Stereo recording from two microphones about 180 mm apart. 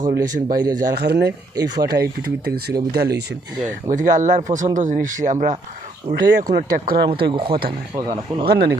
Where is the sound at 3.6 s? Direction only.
45° right (ahead or behind).